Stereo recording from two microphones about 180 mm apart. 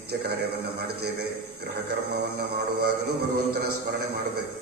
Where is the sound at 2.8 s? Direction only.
65° right (ahead or behind).